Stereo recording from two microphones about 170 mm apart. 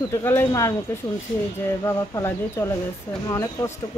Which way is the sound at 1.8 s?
20° left (ahead or behind).